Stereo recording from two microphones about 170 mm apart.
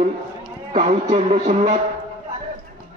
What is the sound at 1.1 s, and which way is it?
Speech, 40° right (ahead or behind).